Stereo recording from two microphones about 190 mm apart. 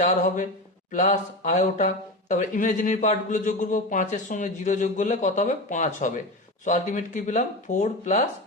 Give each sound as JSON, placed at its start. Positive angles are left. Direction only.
{"t": 0.9, "sound": "a man's voice", "side_deg": 40}